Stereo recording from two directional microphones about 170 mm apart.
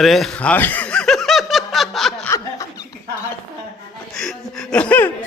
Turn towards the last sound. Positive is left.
turn(degrees=10)  # may be behind; listen again after turning